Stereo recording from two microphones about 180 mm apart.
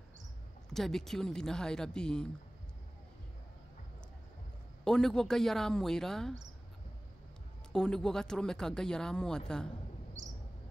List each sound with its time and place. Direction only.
0.7 s speech: centre (ahead or behind)
4.8 s speech: 5° left (ahead or behind)
7.7 s speech: 5° left (ahead or behind)
10.2 s a sound: 40° right (ahead or behind)